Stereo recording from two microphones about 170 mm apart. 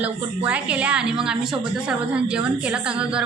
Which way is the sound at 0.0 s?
10° right (ahead or behind).